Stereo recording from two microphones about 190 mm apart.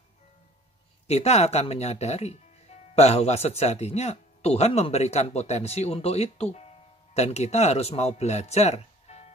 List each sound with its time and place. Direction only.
1.0 s speech: 35° left (ahead or behind)